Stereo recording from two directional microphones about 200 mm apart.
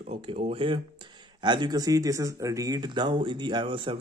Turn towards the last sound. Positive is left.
turn(degrees=-25)  # may be behind; listen again after turning